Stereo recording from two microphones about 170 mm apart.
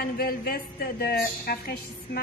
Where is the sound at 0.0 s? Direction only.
60° left (ahead or behind).